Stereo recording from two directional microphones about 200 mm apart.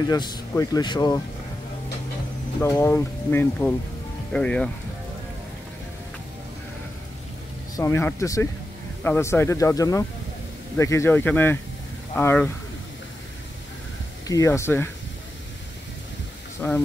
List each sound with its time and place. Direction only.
0.0 s speech: 20° left (ahead or behind)
2.6 s speech: 10° left (ahead or behind)
7.7 s speech: 15° left (ahead or behind)
14.2 s speech: 15° left (ahead or behind)
16.6 s speech: 10° left (ahead or behind)